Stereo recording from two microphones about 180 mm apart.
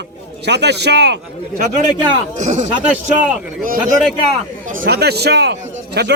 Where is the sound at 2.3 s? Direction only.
40° right (ahead or behind).